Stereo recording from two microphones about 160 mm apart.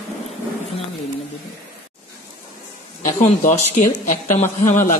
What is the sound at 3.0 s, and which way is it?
Speech, 55° left (ahead or behind).